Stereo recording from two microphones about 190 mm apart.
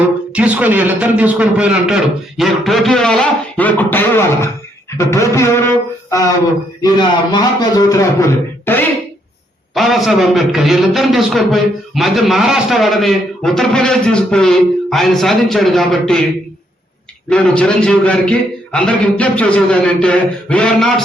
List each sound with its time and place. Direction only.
0.3 s a man's voice: 5° right (ahead or behind); by 4.4 s 10° left (ahead or behind)
4.9 s a sound: 15° left (ahead or behind)
6.8 s a man's voice: 20° left (ahead or behind)
9.7 s a man's voice: centre (ahead or behind)
17.2 s a man's voice: 5° left (ahead or behind)